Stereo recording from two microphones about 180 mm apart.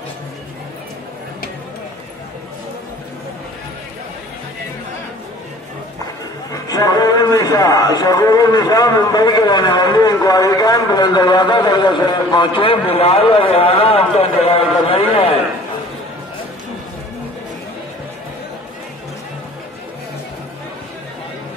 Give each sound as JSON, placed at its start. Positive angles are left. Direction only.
{"t": 6.5, "sound": "a man's voice", "side_deg": 20}